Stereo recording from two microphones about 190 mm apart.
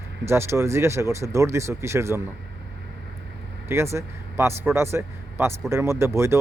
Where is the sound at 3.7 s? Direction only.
15° right (ahead or behind).